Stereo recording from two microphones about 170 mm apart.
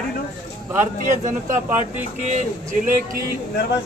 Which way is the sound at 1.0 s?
45° right (ahead or behind).